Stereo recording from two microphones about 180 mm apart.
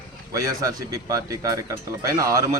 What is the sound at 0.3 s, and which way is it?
Speech, 20° right (ahead or behind).